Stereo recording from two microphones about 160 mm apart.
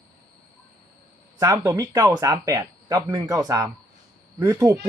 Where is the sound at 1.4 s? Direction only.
20° right (ahead or behind).